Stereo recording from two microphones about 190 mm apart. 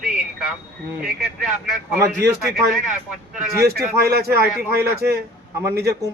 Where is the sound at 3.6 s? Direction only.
55° right (ahead or behind).